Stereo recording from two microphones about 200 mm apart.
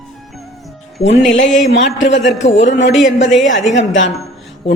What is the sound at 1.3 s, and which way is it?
A man's voice, 65° left (ahead or behind).